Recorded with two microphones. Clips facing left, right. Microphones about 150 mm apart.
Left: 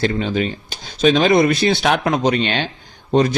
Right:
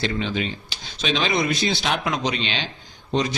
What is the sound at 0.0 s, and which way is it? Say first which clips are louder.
A man's voice: left 6 dB; 45° left (ahead or behind).